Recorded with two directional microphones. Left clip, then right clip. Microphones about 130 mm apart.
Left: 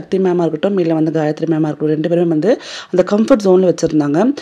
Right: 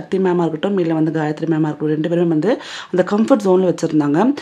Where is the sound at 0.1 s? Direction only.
30° left (ahead or behind).